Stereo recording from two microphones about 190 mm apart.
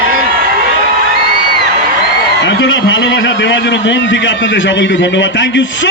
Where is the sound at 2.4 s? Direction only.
75° left (ahead or behind).